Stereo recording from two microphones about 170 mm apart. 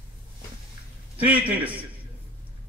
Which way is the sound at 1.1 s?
10° right (ahead or behind).